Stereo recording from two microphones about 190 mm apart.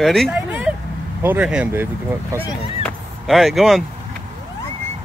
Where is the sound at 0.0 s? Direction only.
Centre (ahead or behind).